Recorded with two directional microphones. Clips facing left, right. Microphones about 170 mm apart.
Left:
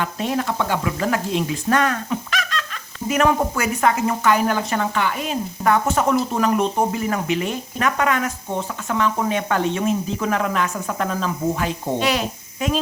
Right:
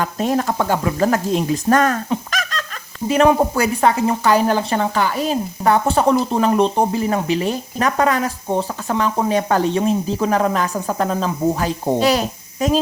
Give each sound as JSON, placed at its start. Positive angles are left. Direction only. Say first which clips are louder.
{"t": 0.0, "sound": "speech", "louder": "right 4 dB", "side_deg": -40}
{"t": 3.5, "sound": "speech", "louder": "right 3 dB", "side_deg": -30}